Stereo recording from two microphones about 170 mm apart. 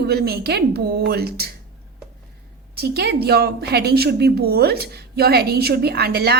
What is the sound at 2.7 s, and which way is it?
Speech, 70° right (ahead or behind).